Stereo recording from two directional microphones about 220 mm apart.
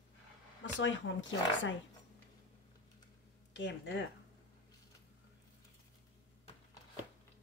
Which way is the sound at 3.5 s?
55° left (ahead or behind).